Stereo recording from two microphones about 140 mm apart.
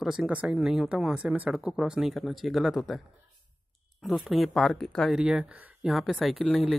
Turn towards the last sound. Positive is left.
turn(degrees=0)  # may be behind; listen again after turning